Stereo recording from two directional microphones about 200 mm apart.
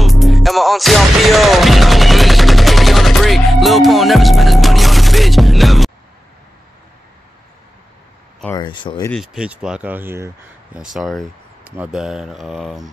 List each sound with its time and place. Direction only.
0.0 s music: centre (ahead or behind)
8.5 s speech: 25° left (ahead or behind)
9.1 s speech: centre (ahead or behind)
10.8 s speech: centre (ahead or behind)